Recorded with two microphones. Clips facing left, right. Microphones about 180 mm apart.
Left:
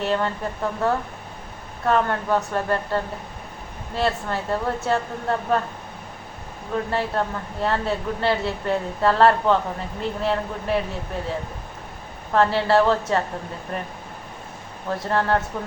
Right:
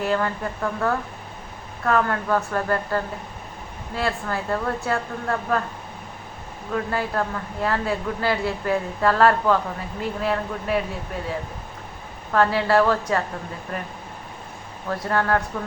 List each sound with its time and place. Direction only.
0.0 s a woman's voice: 25° left (ahead or behind)
6.9 s a woman's voice: 25° left (ahead or behind)
12.3 s a woman's voice: 25° left (ahead or behind)
14.8 s a woman's voice: 25° left (ahead or behind)